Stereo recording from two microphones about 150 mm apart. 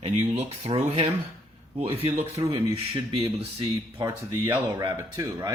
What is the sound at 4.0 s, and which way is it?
Speech, 20° right (ahead or behind).